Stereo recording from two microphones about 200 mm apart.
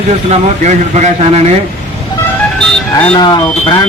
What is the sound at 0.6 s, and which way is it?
Speech, 35° right (ahead or behind).